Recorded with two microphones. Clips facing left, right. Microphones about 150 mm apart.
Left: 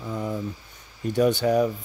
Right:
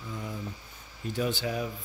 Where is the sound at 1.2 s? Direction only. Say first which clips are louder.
Left 11 dB; 40° left (ahead or behind).